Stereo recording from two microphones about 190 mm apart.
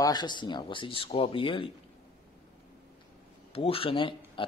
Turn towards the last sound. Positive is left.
turn(degrees=25)  # may be behind; listen again after turning